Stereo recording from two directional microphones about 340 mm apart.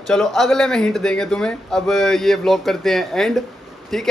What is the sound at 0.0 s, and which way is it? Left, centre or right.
Speech, centre.